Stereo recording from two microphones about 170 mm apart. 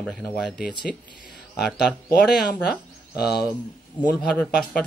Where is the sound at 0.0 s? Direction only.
5° left (ahead or behind).